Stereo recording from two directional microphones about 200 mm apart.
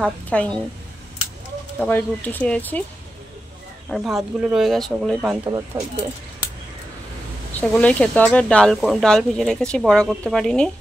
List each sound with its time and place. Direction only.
0.0 s speech: 5° left (ahead or behind)
1.8 s speech: 10° left (ahead or behind)
3.9 s speech: centre (ahead or behind)
5.7 s speech: 15° right (ahead or behind)
7.5 s speech: 5° left (ahead or behind)